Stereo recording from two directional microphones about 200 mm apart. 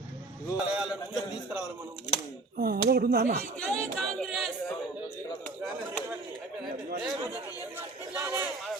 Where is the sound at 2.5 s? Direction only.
50° right (ahead or behind).